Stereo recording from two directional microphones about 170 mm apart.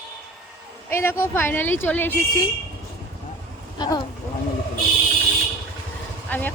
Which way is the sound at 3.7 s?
25° left (ahead or behind).